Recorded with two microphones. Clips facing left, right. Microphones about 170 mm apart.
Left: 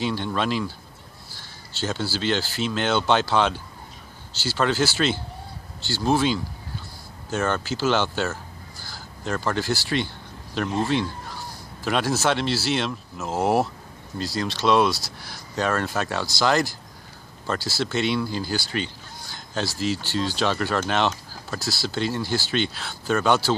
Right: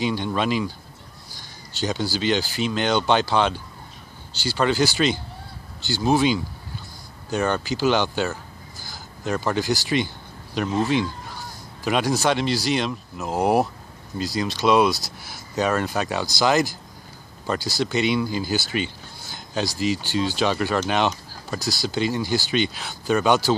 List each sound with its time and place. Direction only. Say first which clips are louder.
0.0 s speech: right 2 dB; centre (ahead or behind)
1.8 s speech: right 2 dB; centre (ahead or behind)
8.7 s crow: right 2 dB; 20° right (ahead or behind)
9.2 s speech: right 2 dB; centre (ahead or behind)
17.8 s speech: right 2 dB; centre (ahead or behind)
19.8 s speech: right 2 dB; centre (ahead or behind)
20.9 s a sound: right 1 dB; centre (ahead or behind)
21.5 s speech: right 2 dB; 20° right (ahead or behind)
21.8 s speech: right 2 dB; centre (ahead or behind)